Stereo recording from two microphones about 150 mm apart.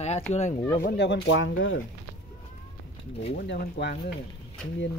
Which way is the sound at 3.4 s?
90° left.